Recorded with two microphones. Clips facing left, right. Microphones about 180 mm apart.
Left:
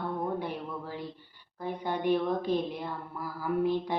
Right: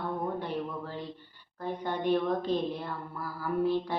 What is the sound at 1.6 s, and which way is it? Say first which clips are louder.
Speech: left 1 dB; 10° left (ahead or behind).